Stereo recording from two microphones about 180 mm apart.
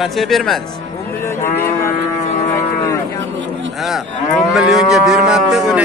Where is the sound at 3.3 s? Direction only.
90° right.